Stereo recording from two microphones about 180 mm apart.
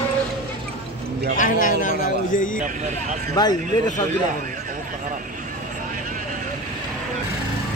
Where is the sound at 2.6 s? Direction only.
45° right (ahead or behind).